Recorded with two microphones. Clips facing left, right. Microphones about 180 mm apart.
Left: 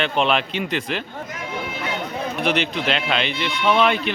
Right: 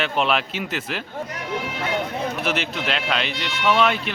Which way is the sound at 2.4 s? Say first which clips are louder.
Left 3 dB; 5° right (ahead or behind).